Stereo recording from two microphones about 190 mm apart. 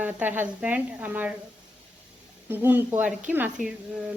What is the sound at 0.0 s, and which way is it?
A woman's voice, 10° right (ahead or behind).